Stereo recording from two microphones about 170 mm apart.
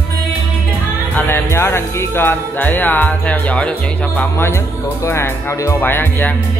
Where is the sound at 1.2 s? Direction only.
15° left (ahead or behind).